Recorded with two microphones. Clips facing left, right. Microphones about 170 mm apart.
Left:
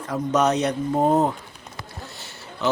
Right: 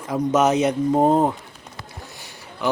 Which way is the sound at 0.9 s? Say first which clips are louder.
Right 3 dB; 20° right (ahead or behind).